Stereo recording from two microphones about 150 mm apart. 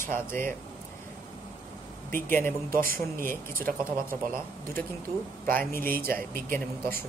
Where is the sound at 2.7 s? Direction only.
75° right (ahead or behind).